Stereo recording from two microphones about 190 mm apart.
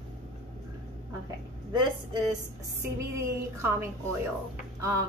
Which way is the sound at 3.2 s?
15° right (ahead or behind).